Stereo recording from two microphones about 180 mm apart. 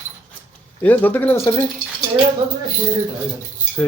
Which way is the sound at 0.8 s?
10° left (ahead or behind).